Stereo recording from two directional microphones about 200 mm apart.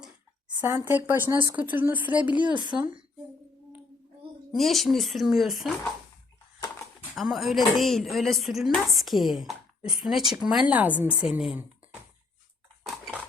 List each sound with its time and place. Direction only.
0.6 s a woman's voice: 10° right (ahead or behind)
2.4 s speech: 25° right (ahead or behind)
4.5 s a woman's voice: centre (ahead or behind)
7.2 s a woman's voice: centre (ahead or behind)